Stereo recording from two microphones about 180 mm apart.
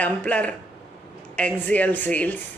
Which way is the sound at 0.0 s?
10° left (ahead or behind).